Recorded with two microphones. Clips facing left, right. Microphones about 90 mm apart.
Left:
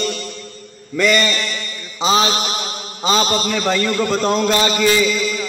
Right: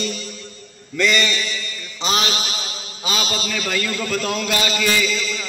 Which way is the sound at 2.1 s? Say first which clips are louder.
Left 6 dB; 30° left (ahead or behind).